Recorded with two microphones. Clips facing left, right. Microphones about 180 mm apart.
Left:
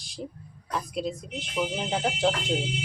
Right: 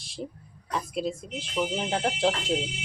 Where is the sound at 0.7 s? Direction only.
Centre (ahead or behind).